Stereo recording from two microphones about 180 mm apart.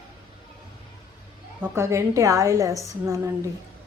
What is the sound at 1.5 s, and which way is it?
A woman's voice, 15° right (ahead or behind).